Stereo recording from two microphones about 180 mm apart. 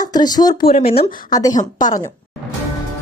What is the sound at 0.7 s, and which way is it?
Speech, 35° left (ahead or behind).